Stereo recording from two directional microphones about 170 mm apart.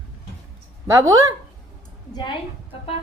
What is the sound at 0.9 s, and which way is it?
Speech, 20° right (ahead or behind).